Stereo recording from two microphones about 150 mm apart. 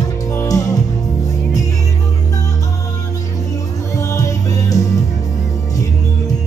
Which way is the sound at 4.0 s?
20° left (ahead or behind).